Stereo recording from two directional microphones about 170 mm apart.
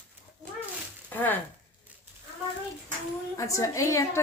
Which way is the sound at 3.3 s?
20° left (ahead or behind).